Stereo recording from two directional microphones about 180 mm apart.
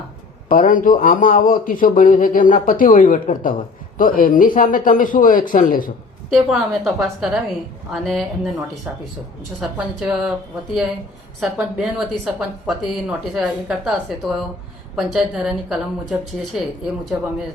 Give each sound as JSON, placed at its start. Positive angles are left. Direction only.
{"t": 0.4, "sound": "a man's voice", "side_deg": 50}
{"t": 6.3, "sound": "speech", "side_deg": 0}
{"t": 9.6, "sound": "speech", "side_deg": -5}
{"t": 11.3, "sound": "a man's voice", "side_deg": 0}